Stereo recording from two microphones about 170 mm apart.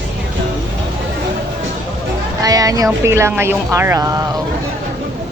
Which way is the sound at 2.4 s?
20° right (ahead or behind).